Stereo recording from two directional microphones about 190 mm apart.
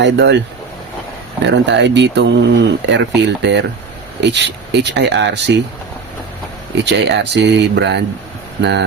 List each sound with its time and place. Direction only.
0.0 s speech: 65° right (ahead or behind)
6.8 s speech: 65° right (ahead or behind)